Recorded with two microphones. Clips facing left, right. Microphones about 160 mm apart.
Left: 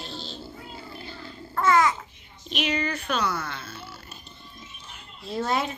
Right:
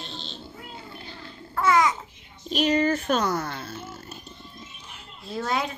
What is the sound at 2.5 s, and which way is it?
Speech, 40° right (ahead or behind).